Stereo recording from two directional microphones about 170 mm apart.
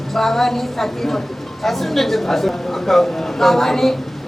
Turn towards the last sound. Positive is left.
turn(degrees=0)  # may be behind; listen again after turning